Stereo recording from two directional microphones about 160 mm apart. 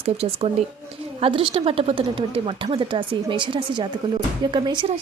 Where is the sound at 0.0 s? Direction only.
40° right (ahead or behind).